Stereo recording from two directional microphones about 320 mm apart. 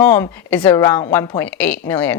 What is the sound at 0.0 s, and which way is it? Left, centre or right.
A woman's voice, centre.